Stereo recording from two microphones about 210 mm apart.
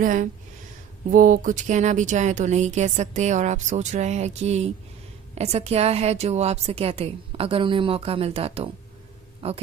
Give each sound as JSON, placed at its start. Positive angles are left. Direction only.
{"t": 0.0, "sound": "a woman's voice", "side_deg": -40}